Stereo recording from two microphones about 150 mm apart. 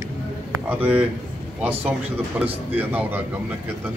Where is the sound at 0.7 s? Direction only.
10° right (ahead or behind).